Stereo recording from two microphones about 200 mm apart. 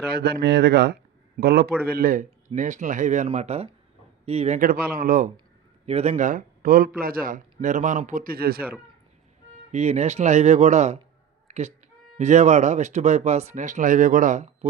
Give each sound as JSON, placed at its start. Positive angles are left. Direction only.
{"t": 0.1, "sound": "speech", "side_deg": -55}
{"t": 5.8, "sound": "speech", "side_deg": -30}
{"t": 9.7, "sound": "speech", "side_deg": -35}
{"t": 11.4, "sound": "cat", "side_deg": -35}
{"t": 12.1, "sound": "speech", "side_deg": -35}